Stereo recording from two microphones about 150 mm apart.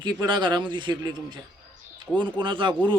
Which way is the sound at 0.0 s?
30° right (ahead or behind).